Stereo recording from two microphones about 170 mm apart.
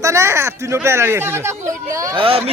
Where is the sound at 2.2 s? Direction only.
35° right (ahead or behind).